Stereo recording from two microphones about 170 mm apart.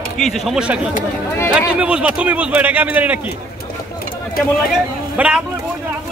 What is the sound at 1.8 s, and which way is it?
A man's voice, 5° right (ahead or behind).